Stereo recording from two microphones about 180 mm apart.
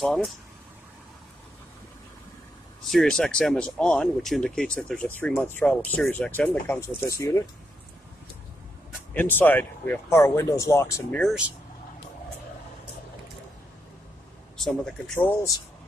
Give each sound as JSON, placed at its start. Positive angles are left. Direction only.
{"t": 0.0, "sound": "speech", "side_deg": 0}
{"t": 2.9, "sound": "speech", "side_deg": 5}
{"t": 9.1, "sound": "speech", "side_deg": 10}
{"t": 11.1, "sound": "speech", "side_deg": 0}
{"t": 14.6, "sound": "speech", "side_deg": 0}